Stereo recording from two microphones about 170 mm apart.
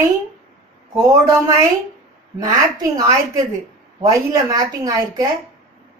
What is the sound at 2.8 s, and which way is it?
Speech, 20° right (ahead or behind).